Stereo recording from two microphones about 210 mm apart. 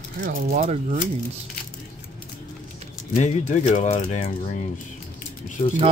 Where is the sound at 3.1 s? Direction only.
35° left (ahead or behind).